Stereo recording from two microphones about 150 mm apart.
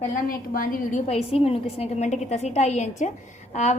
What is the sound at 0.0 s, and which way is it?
A woman's voice, 75° left (ahead or behind).